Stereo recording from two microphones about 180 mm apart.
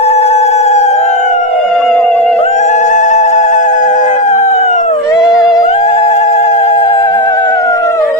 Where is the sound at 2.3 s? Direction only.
40° left (ahead or behind).